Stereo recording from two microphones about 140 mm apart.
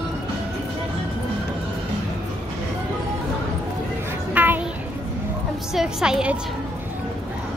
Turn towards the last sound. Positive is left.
turn(degrees=-5)  # may be behind; listen again after turning